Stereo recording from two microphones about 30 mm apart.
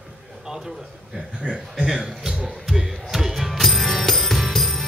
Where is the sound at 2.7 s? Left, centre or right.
Centre.